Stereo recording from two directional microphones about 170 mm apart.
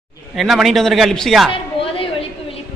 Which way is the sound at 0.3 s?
Centre (ahead or behind).